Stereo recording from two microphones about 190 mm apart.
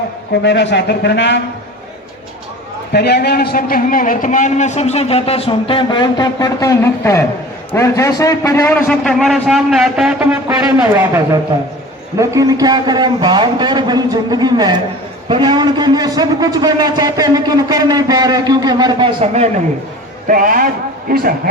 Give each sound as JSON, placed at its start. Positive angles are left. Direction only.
{"t": 0.4, "sound": "a man's voice", "side_deg": 65}
{"t": 2.9, "sound": "a man's voice", "side_deg": 55}
{"t": 12.1, "sound": "a man's voice", "side_deg": -15}
{"t": 20.2, "sound": "a man's voice", "side_deg": -45}